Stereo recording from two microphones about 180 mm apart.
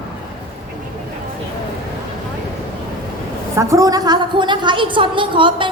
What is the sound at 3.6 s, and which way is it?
A woman's voice, 15° right (ahead or behind).